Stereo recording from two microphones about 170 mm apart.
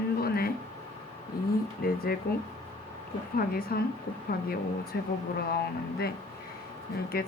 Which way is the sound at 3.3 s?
60° left (ahead or behind).